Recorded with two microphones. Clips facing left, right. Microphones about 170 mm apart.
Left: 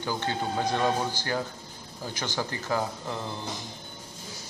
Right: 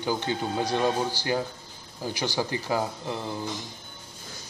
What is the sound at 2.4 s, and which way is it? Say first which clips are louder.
Speech: right 1 dB; 15° right (ahead or behind).